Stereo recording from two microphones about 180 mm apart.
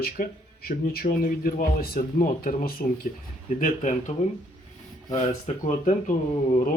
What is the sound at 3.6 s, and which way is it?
Speech, 45° left (ahead or behind).